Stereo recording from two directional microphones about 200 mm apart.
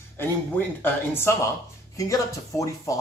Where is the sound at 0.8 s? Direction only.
10° left (ahead or behind).